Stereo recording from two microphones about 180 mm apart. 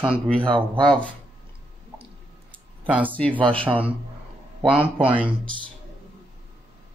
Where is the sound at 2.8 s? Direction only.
10° right (ahead or behind).